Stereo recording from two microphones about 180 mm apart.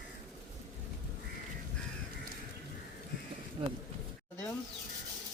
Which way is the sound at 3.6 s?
30° right (ahead or behind).